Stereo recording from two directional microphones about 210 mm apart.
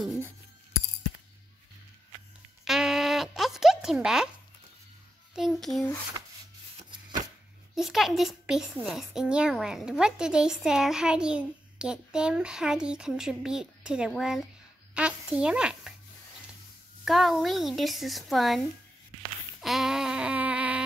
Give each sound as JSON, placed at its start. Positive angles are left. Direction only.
{"t": 2.6, "sound": "a sound", "side_deg": 0}
{"t": 5.3, "sound": "a child's voice", "side_deg": 0}
{"t": 6.8, "sound": "chopping", "side_deg": -20}
{"t": 7.7, "sound": "a child's voice", "side_deg": 0}
{"t": 17.0, "sound": "a child's voice", "side_deg": 0}
{"t": 19.6, "sound": "a sound", "side_deg": 0}